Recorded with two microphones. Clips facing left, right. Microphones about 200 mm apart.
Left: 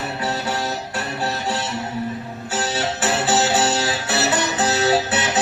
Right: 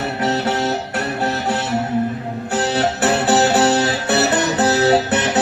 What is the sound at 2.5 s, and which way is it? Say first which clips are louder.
Music: right 5 dB; 60° right (ahead or behind).